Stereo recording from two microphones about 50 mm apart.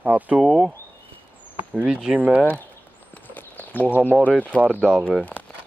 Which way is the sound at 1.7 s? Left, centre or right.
Right.